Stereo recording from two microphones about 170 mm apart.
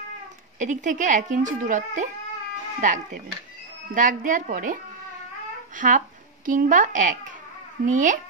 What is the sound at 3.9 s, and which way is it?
Speech, 50° right (ahead or behind).